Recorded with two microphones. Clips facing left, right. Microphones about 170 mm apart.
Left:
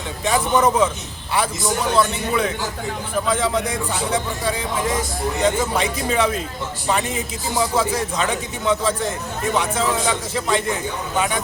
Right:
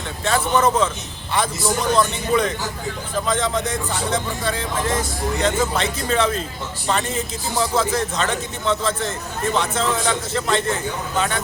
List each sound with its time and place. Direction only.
0.3 s a man's voice: 15° left (ahead or behind)